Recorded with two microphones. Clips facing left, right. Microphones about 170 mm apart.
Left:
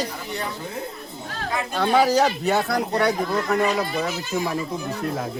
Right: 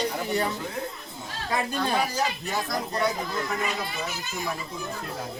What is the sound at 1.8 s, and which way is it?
Speech, 75° left (ahead or behind).